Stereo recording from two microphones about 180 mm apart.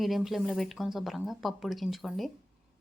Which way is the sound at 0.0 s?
Centre (ahead or behind).